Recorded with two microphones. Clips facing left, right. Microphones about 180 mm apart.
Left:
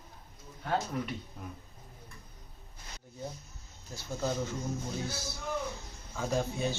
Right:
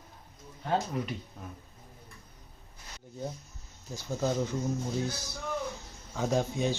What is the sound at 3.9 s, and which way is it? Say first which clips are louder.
A man's voice: right 3 dB; 15° right (ahead or behind).